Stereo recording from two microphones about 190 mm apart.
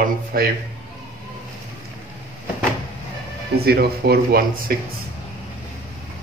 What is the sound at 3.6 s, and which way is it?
Speech, 55° right (ahead or behind).